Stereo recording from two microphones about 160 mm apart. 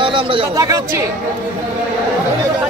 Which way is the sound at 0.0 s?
30° right (ahead or behind).